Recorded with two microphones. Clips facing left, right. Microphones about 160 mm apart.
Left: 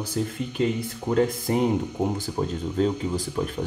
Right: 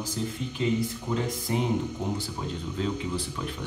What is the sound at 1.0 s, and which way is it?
Speech, 50° left (ahead or behind).